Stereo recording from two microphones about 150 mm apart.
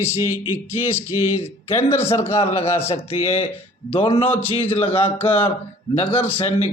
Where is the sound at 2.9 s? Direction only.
40° left (ahead or behind).